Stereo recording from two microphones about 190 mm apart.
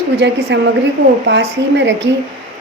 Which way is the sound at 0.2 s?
65° right (ahead or behind).